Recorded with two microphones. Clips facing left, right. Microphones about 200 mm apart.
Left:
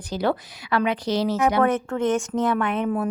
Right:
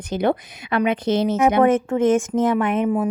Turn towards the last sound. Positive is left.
turn(degrees=-15)  # may be behind; listen again after turning